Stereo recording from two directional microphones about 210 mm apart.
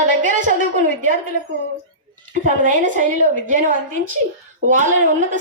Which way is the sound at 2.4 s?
40° right (ahead or behind).